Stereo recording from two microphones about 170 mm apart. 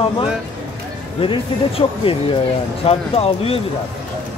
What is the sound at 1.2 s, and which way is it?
Speech, 30° left (ahead or behind).